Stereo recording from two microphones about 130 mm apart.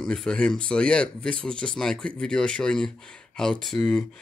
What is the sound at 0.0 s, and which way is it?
Speech, 5° left (ahead or behind).